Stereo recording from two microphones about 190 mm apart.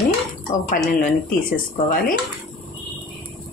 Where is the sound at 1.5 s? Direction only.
45° left (ahead or behind).